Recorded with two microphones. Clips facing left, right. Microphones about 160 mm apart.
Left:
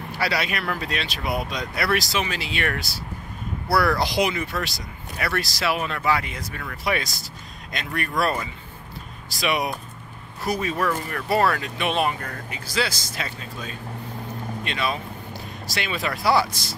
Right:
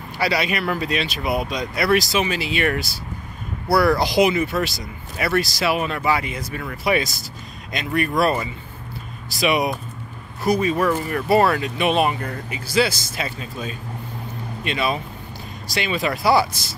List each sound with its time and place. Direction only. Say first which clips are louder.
0.2 s speech: right 4 dB; centre (ahead or behind)
3.7 s speech: right 4 dB; 20° right (ahead or behind)
4.0 s speech: right 5 dB; 5° right (ahead or behind)
10.4 s speech: right 6 dB; centre (ahead or behind)
10.8 s speech: right 5 dB; 15° right (ahead or behind)
14.6 s speech: right 5 dB; 10° right (ahead or behind)